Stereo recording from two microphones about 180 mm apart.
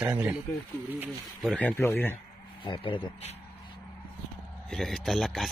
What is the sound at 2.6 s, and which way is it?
Speech, 30° left (ahead or behind).